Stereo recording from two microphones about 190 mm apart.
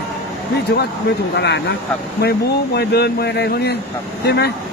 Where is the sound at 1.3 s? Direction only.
65° left (ahead or behind).